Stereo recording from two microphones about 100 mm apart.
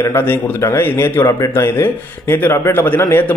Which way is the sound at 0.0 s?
25° left (ahead or behind).